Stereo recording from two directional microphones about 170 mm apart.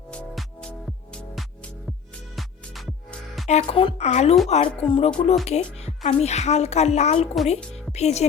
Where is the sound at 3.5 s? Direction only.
40° left (ahead or behind).